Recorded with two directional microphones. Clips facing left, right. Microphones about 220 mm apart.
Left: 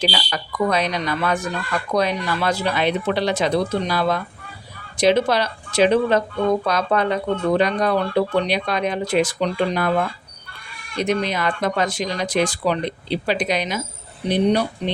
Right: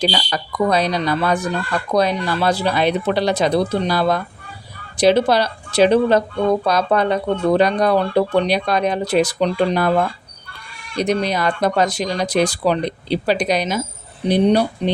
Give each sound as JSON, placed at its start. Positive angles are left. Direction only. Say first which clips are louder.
{"t": 0.1, "sound": "speech", "louder": "right 3 dB", "side_deg": -35}